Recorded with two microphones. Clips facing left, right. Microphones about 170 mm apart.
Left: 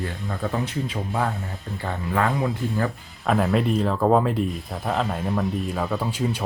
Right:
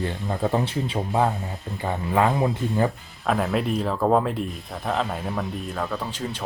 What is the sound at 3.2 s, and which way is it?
Speech, centre (ahead or behind).